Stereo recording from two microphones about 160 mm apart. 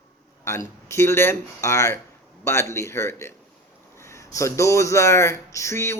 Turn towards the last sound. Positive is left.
turn(degrees=15)  # may be behind; listen again after turning